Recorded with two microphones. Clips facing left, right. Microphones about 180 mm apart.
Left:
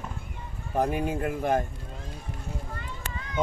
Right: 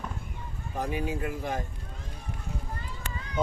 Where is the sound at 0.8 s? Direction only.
50° left (ahead or behind).